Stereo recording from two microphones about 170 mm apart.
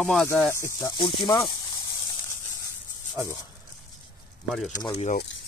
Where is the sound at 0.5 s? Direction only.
15° left (ahead or behind).